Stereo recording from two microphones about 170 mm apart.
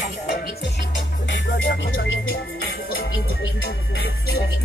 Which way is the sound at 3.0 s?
65° left (ahead or behind).